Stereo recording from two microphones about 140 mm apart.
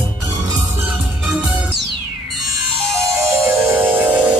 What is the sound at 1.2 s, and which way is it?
Music, 5° right (ahead or behind).